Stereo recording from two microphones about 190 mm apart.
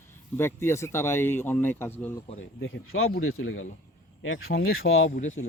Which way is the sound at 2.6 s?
90° left.